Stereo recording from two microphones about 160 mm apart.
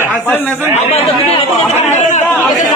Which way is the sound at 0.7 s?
40° left (ahead or behind).